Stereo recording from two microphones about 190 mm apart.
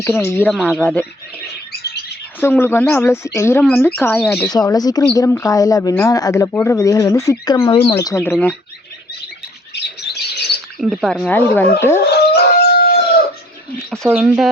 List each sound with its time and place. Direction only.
0.0 s speech: 15° left (ahead or behind)
0.5 s speech: 5° left (ahead or behind)
2.4 s speech: 10° left (ahead or behind)
9.7 s a sound: 60° left (ahead or behind)
10.8 s speech: centre (ahead or behind)
12.0 s howl: 60° left (ahead or behind)
14.1 s speech: 5° right (ahead or behind)